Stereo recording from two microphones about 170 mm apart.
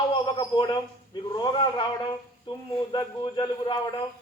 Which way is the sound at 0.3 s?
25° left (ahead or behind).